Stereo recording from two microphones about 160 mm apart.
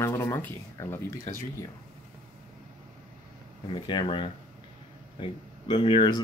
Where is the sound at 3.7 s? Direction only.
30° left (ahead or behind).